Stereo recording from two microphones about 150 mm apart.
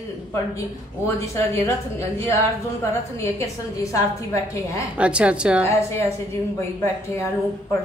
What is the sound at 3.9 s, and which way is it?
Speech, 20° left (ahead or behind).